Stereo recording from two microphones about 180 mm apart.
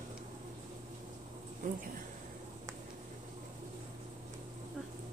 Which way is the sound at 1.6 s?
45° right (ahead or behind).